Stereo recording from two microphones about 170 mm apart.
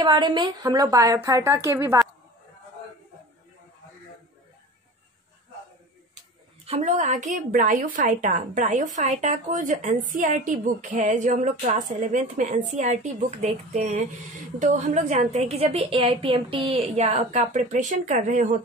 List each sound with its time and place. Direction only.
0.0 s a woman's voice: 25° right (ahead or behind)
6.6 s a woman's voice: 40° right (ahead or behind)